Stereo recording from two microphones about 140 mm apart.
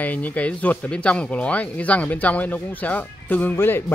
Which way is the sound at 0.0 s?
10° left (ahead or behind).